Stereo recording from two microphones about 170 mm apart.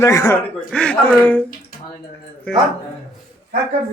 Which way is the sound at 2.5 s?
5° left (ahead or behind).